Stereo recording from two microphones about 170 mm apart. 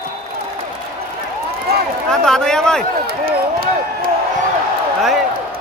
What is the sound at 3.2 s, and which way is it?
Speech, 60° right (ahead or behind).